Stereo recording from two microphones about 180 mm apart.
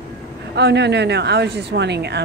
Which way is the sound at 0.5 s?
70° right (ahead or behind).